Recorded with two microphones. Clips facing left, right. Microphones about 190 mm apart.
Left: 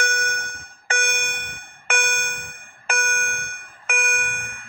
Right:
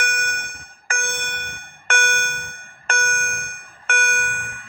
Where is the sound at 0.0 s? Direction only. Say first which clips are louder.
Left 2 dB; 25° left (ahead or behind).